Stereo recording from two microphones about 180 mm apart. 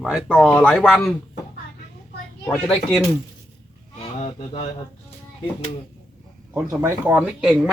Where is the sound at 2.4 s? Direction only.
10° left (ahead or behind).